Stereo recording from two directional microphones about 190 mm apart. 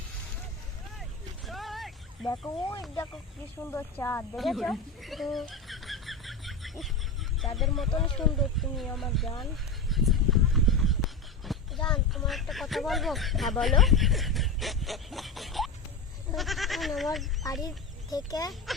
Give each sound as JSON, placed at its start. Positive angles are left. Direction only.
{"t": 1.5, "sound": "vehicle", "side_deg": 0}
{"t": 2.4, "sound": "speech", "side_deg": 15}
{"t": 4.4, "sound": "speech", "side_deg": 0}
{"t": 9.9, "sound": "a sound", "side_deg": 0}
{"t": 11.9, "sound": "speech", "side_deg": 0}
{"t": 17.4, "sound": "speech", "side_deg": 20}